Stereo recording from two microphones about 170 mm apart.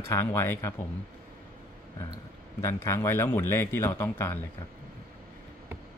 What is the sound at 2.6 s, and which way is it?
Speech, 15° left (ahead or behind).